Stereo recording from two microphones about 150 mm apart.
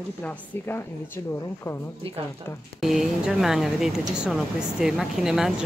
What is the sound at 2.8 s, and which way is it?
Speech, centre (ahead or behind).